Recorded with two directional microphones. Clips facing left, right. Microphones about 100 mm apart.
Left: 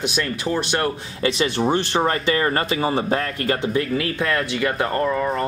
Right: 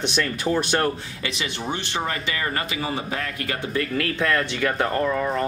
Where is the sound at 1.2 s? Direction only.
40° left (ahead or behind).